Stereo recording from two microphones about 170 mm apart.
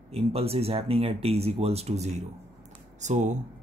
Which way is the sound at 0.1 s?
35° right (ahead or behind).